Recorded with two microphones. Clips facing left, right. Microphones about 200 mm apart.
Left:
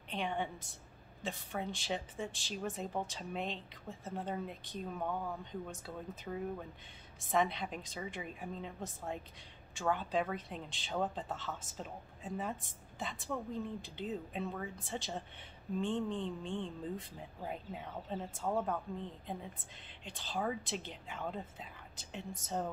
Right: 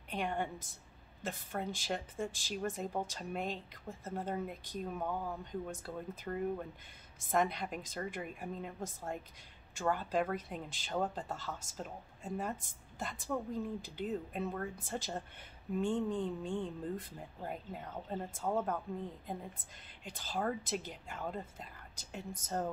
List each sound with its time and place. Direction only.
0.1 s speech: centre (ahead or behind)
20.1 s speech: centre (ahead or behind)